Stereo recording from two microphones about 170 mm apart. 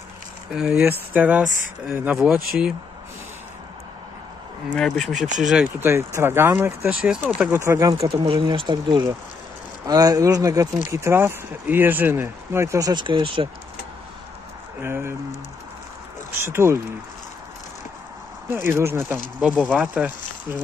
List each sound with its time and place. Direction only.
0.5 s speech: 5° right (ahead or behind)
4.7 s speech: centre (ahead or behind)
5.9 s speech: 15° right (ahead or behind)
8.2 s speech: 30° right (ahead or behind)
14.8 s speech: 15° right (ahead or behind)
16.4 s speech: 15° right (ahead or behind)
18.5 s speech: 15° right (ahead or behind)
19.5 s speech: 5° left (ahead or behind)
19.8 s speech: 5° right (ahead or behind)